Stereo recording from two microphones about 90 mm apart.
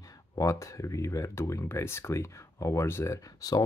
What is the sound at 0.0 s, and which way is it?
Speech, 40° left (ahead or behind).